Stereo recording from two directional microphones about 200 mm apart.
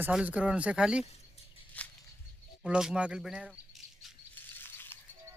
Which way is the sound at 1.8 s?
5° left (ahead or behind).